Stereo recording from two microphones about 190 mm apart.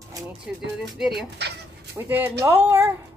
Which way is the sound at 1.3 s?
60° right (ahead or behind).